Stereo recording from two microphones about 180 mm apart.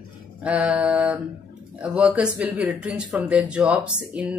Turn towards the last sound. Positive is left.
turn(degrees=-5)  # may be behind; listen again after turning